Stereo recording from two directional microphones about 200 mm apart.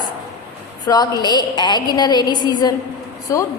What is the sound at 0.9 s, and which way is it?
A woman's voice, 20° left (ahead or behind).